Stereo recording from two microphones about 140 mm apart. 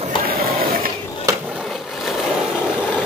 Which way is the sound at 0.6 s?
90° right.